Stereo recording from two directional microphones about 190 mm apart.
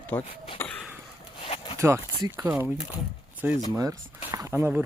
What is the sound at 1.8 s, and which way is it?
Speech, 15° right (ahead or behind).